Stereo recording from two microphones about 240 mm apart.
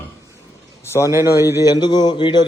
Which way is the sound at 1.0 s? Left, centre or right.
Centre.